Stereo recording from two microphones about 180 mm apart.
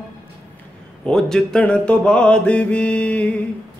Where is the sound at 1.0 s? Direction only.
5° left (ahead or behind).